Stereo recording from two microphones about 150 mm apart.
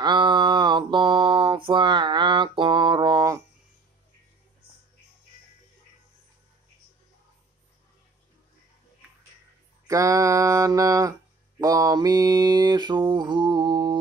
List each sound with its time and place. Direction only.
0.0 s mantra: 30° right (ahead or behind)
9.8 s mantra: 20° right (ahead or behind)